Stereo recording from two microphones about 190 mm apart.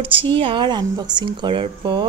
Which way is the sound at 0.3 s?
25° right (ahead or behind).